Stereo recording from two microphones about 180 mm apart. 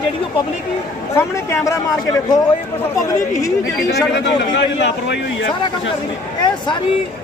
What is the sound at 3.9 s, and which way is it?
A man's voice, 75° left (ahead or behind).